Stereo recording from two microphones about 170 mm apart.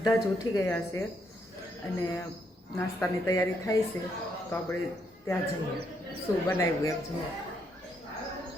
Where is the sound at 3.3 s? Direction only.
20° left (ahead or behind).